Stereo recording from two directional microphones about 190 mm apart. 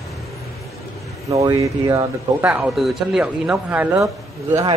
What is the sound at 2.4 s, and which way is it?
Speech, 5° right (ahead or behind).